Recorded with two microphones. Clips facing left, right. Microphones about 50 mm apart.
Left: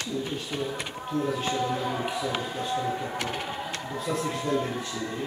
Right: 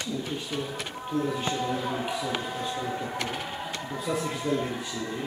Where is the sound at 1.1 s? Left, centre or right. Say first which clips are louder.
Left 1 dB; centre.